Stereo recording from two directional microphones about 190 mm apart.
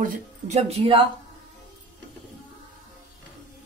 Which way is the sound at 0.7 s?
30° right (ahead or behind).